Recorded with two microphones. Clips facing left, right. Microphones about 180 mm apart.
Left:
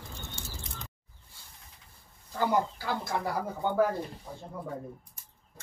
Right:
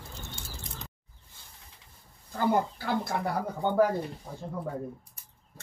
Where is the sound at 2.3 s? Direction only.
55° right (ahead or behind).